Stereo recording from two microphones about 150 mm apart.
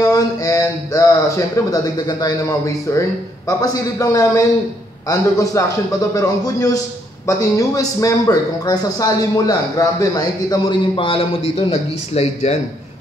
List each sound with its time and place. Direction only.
0.0 s a man's voice: 25° left (ahead or behind)
11.0 s speech: 35° left (ahead or behind)